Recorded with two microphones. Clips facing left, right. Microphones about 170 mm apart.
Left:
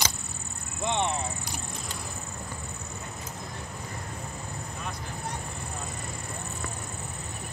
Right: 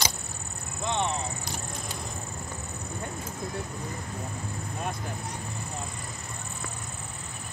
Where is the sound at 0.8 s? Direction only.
15° left (ahead or behind).